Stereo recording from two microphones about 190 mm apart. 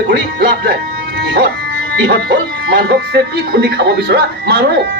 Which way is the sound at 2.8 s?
60° right (ahead or behind).